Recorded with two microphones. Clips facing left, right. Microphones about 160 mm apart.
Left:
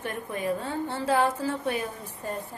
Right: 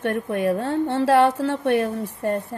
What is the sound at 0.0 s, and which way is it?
A woman's voice, 70° right (ahead or behind).